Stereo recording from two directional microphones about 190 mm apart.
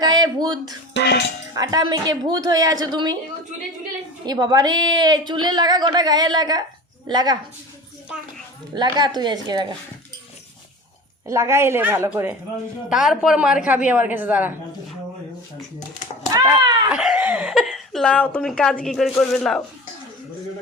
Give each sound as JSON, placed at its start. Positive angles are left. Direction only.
{"t": 0.0, "sound": "a sound", "side_deg": -20}
{"t": 0.9, "sound": "speech", "side_deg": 60}
{"t": 1.5, "sound": "a woman's voice", "side_deg": -20}
{"t": 4.3, "sound": "a woman's voice", "side_deg": -20}
{"t": 8.7, "sound": "a woman's voice", "side_deg": -20}
{"t": 11.3, "sound": "a woman's voice", "side_deg": -15}
{"t": 16.3, "sound": "a child's voice", "side_deg": -20}
{"t": 16.9, "sound": "speech", "side_deg": -5}